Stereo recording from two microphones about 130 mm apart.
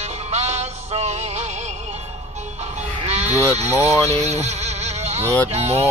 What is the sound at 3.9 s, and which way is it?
Vehicle, 55° right (ahead or behind).